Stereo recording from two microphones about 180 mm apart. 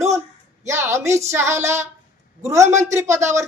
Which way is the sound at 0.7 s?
15° right (ahead or behind).